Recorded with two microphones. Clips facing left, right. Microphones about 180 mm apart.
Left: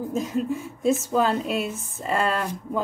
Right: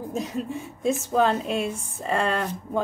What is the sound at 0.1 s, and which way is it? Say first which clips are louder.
A woman's voice: left 3 dB; centre (ahead or behind).